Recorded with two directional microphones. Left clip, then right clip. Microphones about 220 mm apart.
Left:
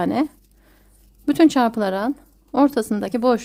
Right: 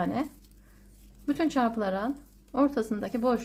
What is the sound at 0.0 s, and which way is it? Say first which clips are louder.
A woman's voice: left 9 dB; 50° left (ahead or behind).